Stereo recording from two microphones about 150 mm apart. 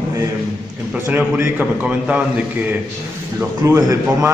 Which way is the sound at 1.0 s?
15° right (ahead or behind).